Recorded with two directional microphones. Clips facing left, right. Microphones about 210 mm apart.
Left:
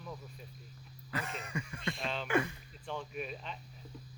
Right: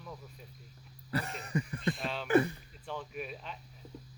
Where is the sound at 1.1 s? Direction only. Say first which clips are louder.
Right 5 dB; 35° right (ahead or behind).